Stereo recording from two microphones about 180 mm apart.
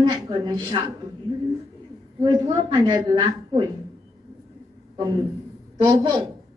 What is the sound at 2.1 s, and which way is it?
A woman's voice, 25° right (ahead or behind).